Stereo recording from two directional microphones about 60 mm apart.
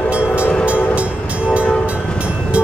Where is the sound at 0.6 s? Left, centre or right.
Right.